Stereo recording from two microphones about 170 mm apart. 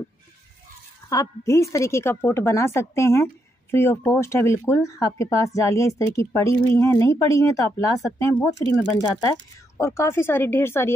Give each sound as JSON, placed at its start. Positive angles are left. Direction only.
{"t": 1.0, "sound": "speech", "side_deg": 20}
{"t": 9.8, "sound": "speech", "side_deg": 15}